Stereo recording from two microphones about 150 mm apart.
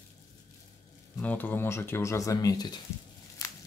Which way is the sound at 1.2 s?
10° left (ahead or behind).